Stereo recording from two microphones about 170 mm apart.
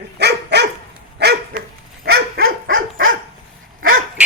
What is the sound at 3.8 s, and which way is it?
Dog, 55° right (ahead or behind).